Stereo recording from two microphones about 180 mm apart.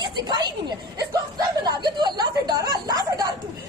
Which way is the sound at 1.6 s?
25° right (ahead or behind).